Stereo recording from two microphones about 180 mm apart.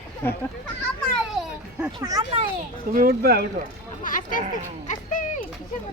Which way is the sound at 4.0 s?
45° left (ahead or behind).